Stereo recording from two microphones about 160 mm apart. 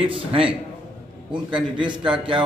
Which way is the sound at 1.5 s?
30° right (ahead or behind).